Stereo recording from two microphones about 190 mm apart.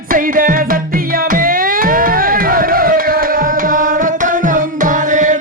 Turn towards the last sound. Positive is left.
turn(degrees=-40)  # may be behind; listen again after turning